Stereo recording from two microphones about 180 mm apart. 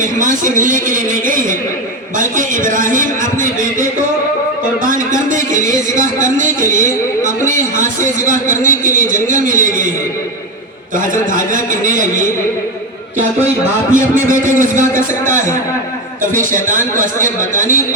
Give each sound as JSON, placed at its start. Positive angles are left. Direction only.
{"t": 0.0, "sound": "a man's voice", "side_deg": -45}
{"t": 4.8, "sound": "a man's voice", "side_deg": -45}
{"t": 6.7, "sound": "speech", "side_deg": 15}
{"t": 7.8, "sound": "a man's voice", "side_deg": -45}
{"t": 10.9, "sound": "a man's voice", "side_deg": -45}
{"t": 13.9, "sound": "a man's voice", "side_deg": -45}